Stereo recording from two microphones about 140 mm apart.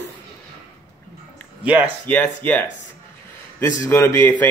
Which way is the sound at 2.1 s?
10° left (ahead or behind).